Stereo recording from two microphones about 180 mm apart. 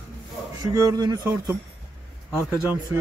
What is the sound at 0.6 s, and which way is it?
Speech, 20° right (ahead or behind).